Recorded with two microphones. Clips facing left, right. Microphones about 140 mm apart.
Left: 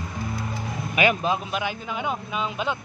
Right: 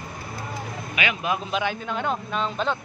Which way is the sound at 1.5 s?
5° left (ahead or behind).